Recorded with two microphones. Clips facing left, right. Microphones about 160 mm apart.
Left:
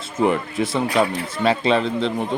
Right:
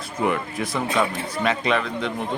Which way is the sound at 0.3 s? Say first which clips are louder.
Left 2 dB; 25° left (ahead or behind).